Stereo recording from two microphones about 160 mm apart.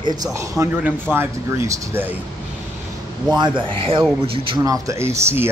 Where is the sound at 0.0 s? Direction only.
25° right (ahead or behind).